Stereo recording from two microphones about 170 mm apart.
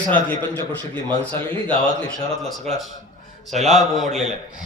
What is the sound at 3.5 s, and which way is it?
Speech, centre (ahead or behind).